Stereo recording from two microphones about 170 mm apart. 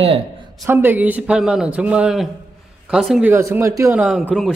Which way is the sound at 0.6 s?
10° right (ahead or behind).